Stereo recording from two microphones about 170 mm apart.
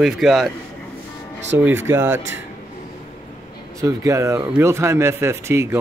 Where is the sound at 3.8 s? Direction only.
20° right (ahead or behind).